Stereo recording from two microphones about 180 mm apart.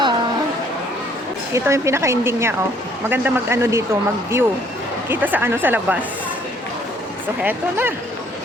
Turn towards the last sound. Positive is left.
turn(degrees=-10)  # may be behind; listen again after turning